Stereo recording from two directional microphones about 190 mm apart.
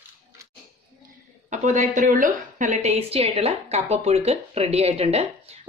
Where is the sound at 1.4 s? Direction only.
40° right (ahead or behind).